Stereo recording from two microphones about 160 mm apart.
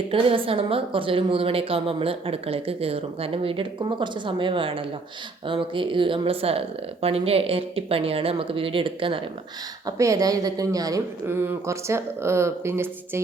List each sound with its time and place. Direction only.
0.1 s a woman's voice: 35° right (ahead or behind)
9.8 s speech: 20° right (ahead or behind)